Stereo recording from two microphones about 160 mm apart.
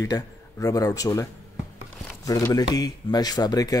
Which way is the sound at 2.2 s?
20° left (ahead or behind).